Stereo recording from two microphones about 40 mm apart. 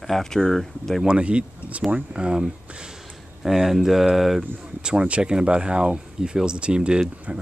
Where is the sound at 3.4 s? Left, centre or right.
Centre.